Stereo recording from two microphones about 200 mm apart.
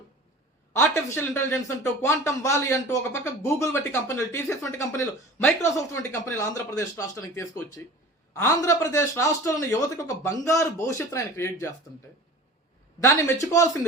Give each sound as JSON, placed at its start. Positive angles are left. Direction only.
{"t": 0.7, "sound": "speech", "side_deg": 10}
{"t": 13.0, "sound": "speech", "side_deg": 15}